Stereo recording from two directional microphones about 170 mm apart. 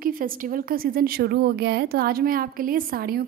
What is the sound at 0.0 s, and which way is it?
A woman's voice, 55° right (ahead or behind).